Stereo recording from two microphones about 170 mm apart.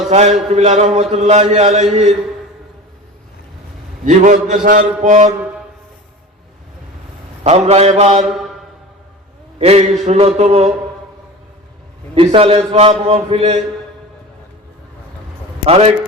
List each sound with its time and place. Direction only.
0.1 s a man's voice: 40° right (ahead or behind)
4.0 s a man's voice: 50° right (ahead or behind)
7.4 s a man's voice: 40° right (ahead or behind)
9.6 s a man's voice: 40° right (ahead or behind)
12.1 s a man's voice: 35° right (ahead or behind)
15.6 s a man's voice: 35° right (ahead or behind)